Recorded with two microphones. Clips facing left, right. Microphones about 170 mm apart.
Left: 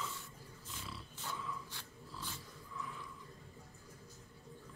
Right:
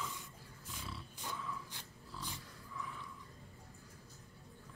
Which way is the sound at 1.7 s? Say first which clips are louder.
Even; 15° right (ahead or behind).